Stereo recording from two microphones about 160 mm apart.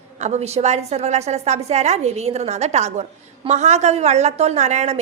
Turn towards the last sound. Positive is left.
turn(degrees=-45)  # may be behind; listen again after turning